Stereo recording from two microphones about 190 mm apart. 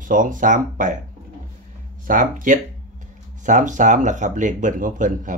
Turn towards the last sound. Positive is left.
turn(degrees=-40)  # may be behind; listen again after turning